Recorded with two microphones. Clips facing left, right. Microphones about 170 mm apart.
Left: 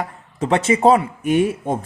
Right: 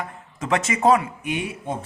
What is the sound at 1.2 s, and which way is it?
Speech, 50° left (ahead or behind).